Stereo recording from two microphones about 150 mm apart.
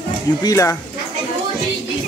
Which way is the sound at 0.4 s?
25° left (ahead or behind).